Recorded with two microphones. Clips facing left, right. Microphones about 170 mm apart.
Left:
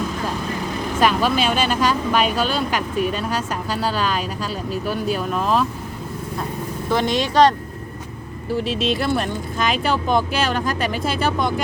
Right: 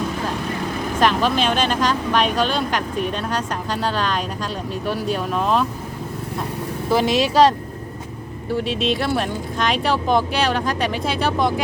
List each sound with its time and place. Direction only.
1.0 s speech: 5° left (ahead or behind)
6.9 s speech: 5° right (ahead or behind)
8.5 s speech: centre (ahead or behind)